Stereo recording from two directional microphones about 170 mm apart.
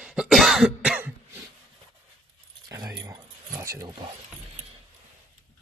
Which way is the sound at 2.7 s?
20° right (ahead or behind).